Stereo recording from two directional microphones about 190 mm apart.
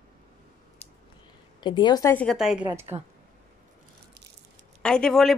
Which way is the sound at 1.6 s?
25° left (ahead or behind).